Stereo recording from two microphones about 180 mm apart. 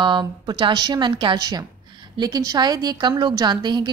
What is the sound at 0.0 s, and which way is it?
A woman's voice, 25° right (ahead or behind).